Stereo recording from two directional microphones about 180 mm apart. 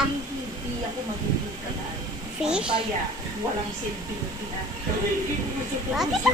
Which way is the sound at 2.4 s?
5° right (ahead or behind).